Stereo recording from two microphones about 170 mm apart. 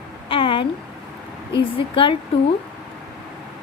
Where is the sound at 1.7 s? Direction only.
30° left (ahead or behind).